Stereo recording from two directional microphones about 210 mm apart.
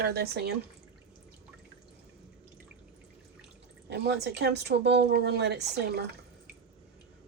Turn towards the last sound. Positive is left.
turn(degrees=-50)  # may be behind; listen again after turning